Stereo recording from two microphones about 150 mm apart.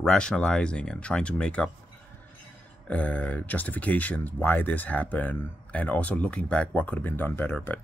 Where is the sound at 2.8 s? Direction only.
10° left (ahead or behind).